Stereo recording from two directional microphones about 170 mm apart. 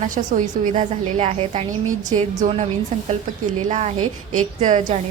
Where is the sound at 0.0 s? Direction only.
50° right (ahead or behind).